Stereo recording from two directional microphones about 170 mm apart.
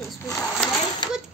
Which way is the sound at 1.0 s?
25° left (ahead or behind).